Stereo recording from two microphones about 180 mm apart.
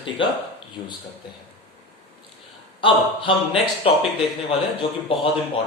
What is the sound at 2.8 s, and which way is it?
Speech, 30° left (ahead or behind).